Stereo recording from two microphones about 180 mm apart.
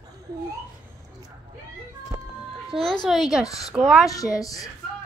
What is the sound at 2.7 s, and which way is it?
A child's voice, centre (ahead or behind).